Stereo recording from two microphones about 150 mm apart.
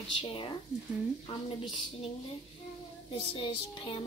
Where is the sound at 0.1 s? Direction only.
35° left (ahead or behind).